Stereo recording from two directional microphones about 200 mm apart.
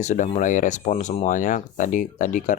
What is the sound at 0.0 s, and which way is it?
Speech, 35° left (ahead or behind).